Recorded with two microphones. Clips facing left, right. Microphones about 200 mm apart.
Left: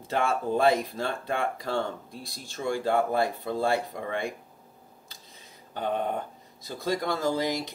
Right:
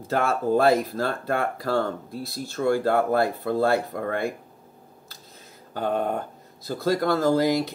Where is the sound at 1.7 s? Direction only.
45° right (ahead or behind).